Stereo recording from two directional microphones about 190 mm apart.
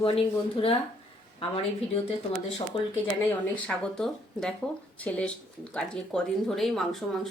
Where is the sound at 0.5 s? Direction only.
30° left (ahead or behind).